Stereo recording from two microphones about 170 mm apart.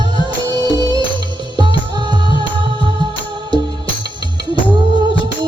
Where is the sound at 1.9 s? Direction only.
25° right (ahead or behind).